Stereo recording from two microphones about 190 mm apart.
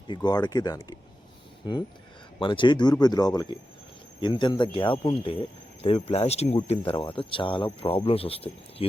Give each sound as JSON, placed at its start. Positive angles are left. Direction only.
{"t": 0.1, "sound": "speech", "side_deg": 20}
{"t": 2.4, "sound": "speech", "side_deg": 25}